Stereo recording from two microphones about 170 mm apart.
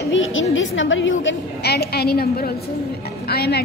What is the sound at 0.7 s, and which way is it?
A woman's voice, 90° left.